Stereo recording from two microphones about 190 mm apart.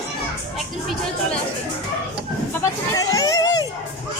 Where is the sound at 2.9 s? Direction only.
20° left (ahead or behind).